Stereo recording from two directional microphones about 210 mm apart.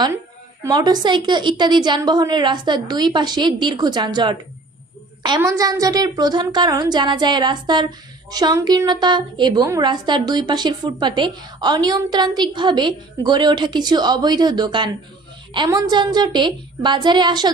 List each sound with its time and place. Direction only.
0.6 s a woman's voice: 20° right (ahead or behind)